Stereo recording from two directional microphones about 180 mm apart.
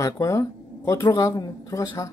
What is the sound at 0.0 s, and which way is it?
Speech, 15° left (ahead or behind).